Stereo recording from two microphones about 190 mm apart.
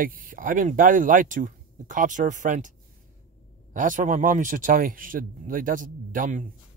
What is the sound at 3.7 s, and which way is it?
Speech, 45° right (ahead or behind).